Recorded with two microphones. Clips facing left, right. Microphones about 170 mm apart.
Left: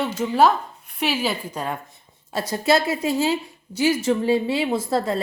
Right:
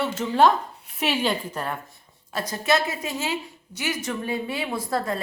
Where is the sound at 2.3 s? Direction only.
30° left (ahead or behind).